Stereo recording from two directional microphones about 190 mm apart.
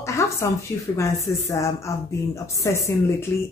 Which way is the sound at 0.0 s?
15° left (ahead or behind).